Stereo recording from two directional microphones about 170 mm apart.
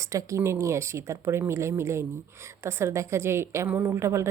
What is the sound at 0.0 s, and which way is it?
A woman's voice, 20° right (ahead or behind).